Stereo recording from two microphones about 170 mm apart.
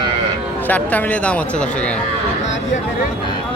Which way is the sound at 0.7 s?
10° left (ahead or behind).